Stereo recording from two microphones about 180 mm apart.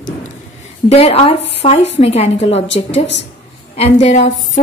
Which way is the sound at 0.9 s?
35° left (ahead or behind).